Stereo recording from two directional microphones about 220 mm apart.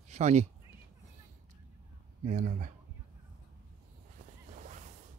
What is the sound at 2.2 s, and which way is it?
Speech, 35° right (ahead or behind).